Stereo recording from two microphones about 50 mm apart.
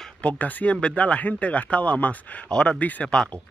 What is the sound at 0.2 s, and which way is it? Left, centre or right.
Speech, left.